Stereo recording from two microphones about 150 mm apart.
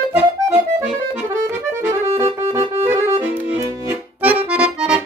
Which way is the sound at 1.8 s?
15° right (ahead or behind).